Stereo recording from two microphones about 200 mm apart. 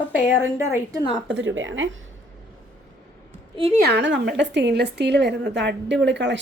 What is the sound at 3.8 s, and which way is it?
Speech, 60° right (ahead or behind).